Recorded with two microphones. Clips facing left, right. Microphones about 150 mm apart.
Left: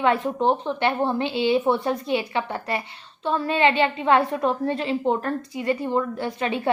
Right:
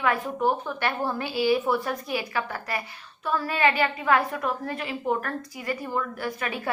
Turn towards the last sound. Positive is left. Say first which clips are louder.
# left 5 dB
turn(degrees=25)  # may be behind; listen again after turning